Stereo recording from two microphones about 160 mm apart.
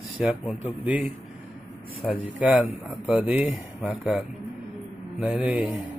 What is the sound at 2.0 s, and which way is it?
Speech, 5° left (ahead or behind).